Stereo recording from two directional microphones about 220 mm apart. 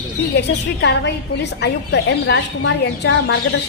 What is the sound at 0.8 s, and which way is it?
A woman's voice, 50° left (ahead or behind).